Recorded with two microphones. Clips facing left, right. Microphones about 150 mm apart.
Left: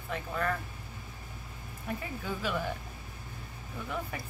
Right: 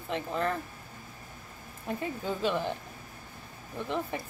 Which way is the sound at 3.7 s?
25° right (ahead or behind).